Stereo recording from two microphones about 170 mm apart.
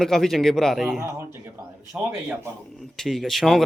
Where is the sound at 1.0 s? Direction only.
15° right (ahead or behind).